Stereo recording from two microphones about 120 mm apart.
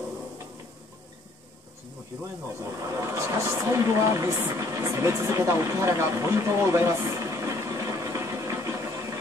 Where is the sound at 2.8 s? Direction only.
25° right (ahead or behind).